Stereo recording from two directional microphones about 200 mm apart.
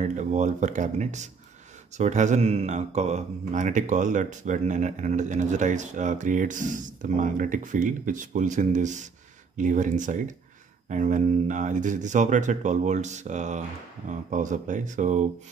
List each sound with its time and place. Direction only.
0.0 s speech: 35° right (ahead or behind)